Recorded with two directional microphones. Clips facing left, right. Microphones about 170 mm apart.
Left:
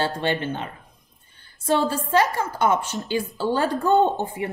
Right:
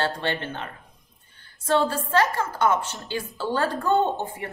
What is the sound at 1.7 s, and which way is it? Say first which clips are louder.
A woman's voice: left 1 dB; 15° left (ahead or behind).